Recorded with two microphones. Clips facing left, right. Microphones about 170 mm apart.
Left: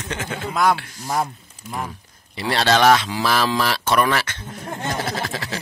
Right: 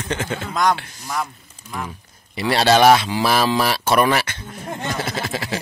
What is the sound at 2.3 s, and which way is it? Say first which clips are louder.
Speech: right 3 dB; 10° right (ahead or behind).